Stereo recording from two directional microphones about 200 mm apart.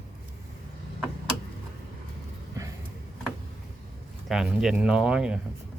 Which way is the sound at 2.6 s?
15° right (ahead or behind).